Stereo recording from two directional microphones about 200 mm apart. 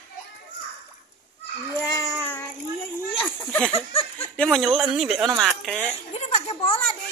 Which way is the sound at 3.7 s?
30° left (ahead or behind).